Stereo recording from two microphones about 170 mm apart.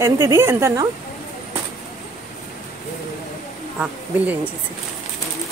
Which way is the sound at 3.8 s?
10° right (ahead or behind).